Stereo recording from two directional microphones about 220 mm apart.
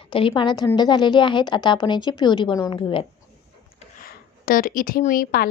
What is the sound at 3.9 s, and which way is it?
Speech, 40° left (ahead or behind).